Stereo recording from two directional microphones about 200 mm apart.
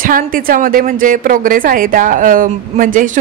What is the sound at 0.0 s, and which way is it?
A woman's voice, 45° right (ahead or behind).